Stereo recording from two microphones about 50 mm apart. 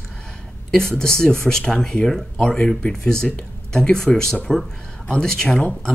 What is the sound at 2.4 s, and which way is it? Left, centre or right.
Speech, left.